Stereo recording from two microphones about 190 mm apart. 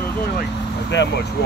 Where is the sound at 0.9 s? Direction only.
70° left (ahead or behind).